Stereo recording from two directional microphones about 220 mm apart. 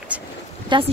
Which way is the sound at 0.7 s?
20° right (ahead or behind).